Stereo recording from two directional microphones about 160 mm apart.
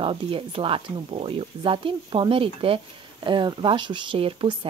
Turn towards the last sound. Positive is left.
turn(degrees=-35)  # may be behind; listen again after turning